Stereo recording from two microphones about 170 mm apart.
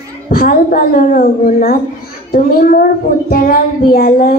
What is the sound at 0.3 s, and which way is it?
Child singing, 60° left (ahead or behind).